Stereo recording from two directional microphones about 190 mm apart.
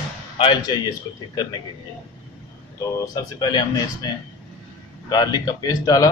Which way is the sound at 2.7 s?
20° left (ahead or behind).